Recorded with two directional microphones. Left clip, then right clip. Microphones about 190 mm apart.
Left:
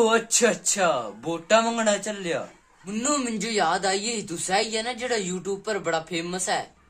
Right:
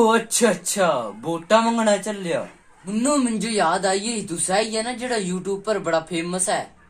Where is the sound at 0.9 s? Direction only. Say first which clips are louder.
Right 3 dB; 10° left (ahead or behind).